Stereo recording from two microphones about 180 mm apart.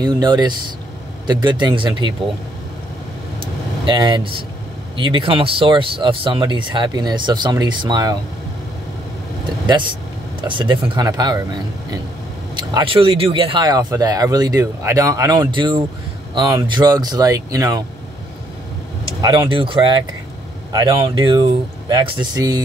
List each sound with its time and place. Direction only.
0.0 s speech: 25° right (ahead or behind)
3.3 s vehicle: 25° right (ahead or behind)
4.9 s speech: 30° right (ahead or behind)
9.7 s speech: 25° right (ahead or behind)
12.5 s speech: 25° right (ahead or behind)
19.2 s speech: 30° right (ahead or behind)
21.0 s speech: 30° right (ahead or behind)